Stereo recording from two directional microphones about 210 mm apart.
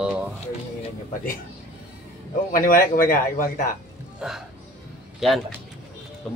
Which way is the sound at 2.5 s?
40° left (ahead or behind).